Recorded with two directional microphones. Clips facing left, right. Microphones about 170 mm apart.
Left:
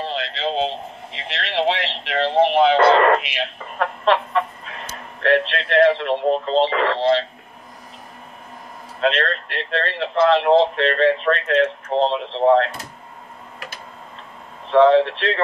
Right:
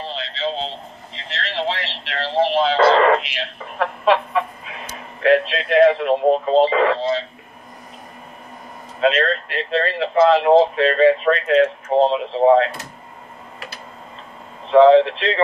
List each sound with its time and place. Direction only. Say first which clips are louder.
0.1 s a sound: left 1 dB; 60° left (ahead or behind)
3.7 s a man's voice: right 1 dB; 5° right (ahead or behind)
7.0 s speech: left 4 dB; 70° left (ahead or behind)
9.0 s speech: right 3 dB; 5° right (ahead or behind)
14.7 s speech: right 3 dB; 5° right (ahead or behind)